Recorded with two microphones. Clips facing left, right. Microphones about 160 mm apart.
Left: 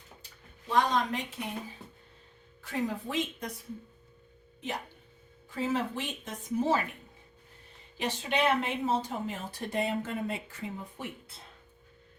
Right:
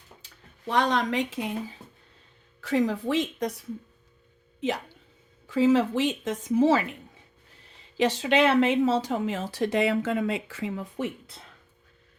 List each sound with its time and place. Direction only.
0.7 s speech: 80° right
2.6 s speech: 90° right
5.5 s a woman's voice: 90° right
7.9 s a woman's voice: 90° right